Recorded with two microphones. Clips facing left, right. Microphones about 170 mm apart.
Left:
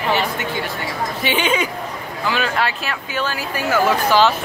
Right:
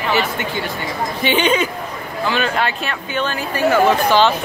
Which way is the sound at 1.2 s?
5° left (ahead or behind).